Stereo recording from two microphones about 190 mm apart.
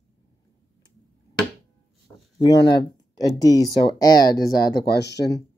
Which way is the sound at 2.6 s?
60° left (ahead or behind).